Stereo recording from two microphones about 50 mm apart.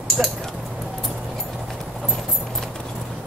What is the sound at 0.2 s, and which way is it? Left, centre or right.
Speech, centre.